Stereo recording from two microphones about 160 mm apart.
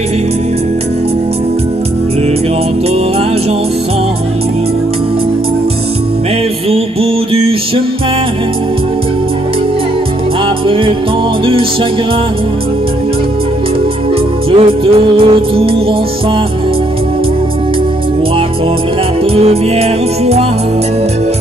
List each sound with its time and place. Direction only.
6.7 s music: 35° right (ahead or behind)
10.7 s music: 35° right (ahead or behind)
14.5 s music: 35° right (ahead or behind)
19.3 s music: 40° right (ahead or behind)